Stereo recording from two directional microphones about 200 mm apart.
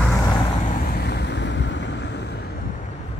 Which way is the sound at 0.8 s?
50° left (ahead or behind).